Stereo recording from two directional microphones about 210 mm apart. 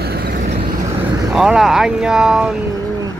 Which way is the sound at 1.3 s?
Centre (ahead or behind).